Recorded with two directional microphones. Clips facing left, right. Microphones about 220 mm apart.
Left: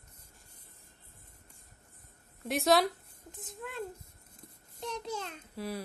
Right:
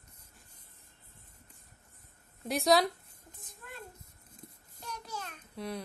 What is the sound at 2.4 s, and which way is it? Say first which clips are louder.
Speech: even; centre (ahead or behind).